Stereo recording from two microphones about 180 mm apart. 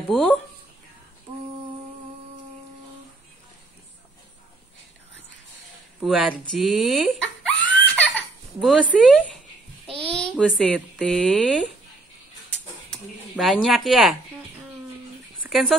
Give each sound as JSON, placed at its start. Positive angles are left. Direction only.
{"t": 0.1, "sound": "speech", "side_deg": 5}
{"t": 5.9, "sound": "a sound", "side_deg": -5}
{"t": 9.0, "sound": "speech", "side_deg": 0}
{"t": 9.8, "sound": "a sound", "side_deg": -30}
{"t": 10.3, "sound": "speech", "side_deg": 0}
{"t": 12.9, "sound": "speech", "side_deg": 0}